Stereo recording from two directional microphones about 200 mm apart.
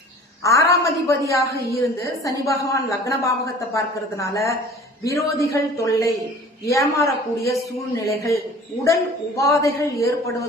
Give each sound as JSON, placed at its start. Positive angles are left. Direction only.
{"t": 0.4, "sound": "speech", "side_deg": 15}